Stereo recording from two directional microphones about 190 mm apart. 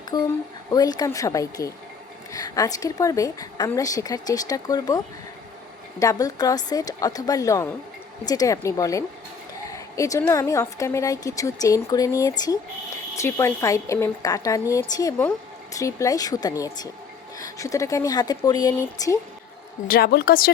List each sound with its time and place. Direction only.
0.1 s a woman's voice: 20° left (ahead or behind)
19.9 s a woman's voice: 55° left (ahead or behind)